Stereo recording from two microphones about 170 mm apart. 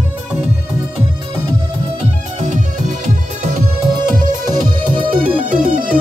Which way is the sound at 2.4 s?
50° right (ahead or behind).